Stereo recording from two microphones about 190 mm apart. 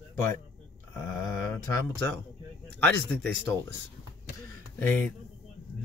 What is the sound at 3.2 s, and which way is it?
Speech, 60° right (ahead or behind).